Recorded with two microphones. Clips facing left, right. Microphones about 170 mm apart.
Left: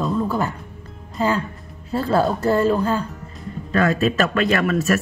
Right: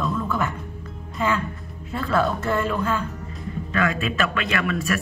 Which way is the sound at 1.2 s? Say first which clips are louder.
Left 3 dB; 35° left (ahead or behind).